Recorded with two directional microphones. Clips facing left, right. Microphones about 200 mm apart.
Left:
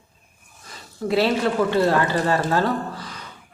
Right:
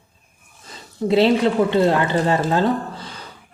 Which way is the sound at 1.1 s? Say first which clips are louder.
Right 4 dB; 20° right (ahead or behind).